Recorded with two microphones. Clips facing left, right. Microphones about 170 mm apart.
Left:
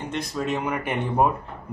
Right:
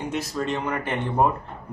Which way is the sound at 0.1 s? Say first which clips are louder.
Left 2 dB; 5° right (ahead or behind).